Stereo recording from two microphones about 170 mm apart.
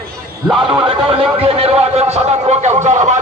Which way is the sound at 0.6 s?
30° right (ahead or behind).